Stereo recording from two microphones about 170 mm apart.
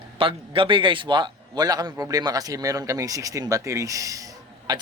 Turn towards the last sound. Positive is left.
turn(degrees=-20)  # may be behind; listen again after turning